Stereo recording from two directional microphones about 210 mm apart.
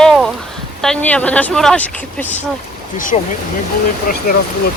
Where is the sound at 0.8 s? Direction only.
5° left (ahead or behind).